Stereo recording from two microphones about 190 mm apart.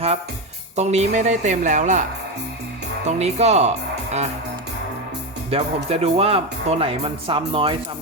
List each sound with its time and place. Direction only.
0.8 s speech: 35° right (ahead or behind)
3.1 s speech: 35° right (ahead or behind)
5.5 s speech: 30° right (ahead or behind)